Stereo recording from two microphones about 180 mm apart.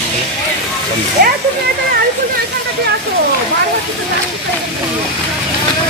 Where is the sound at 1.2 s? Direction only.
55° right (ahead or behind).